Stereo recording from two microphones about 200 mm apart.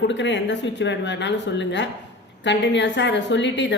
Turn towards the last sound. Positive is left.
turn(degrees=65)  # may be behind; listen again after turning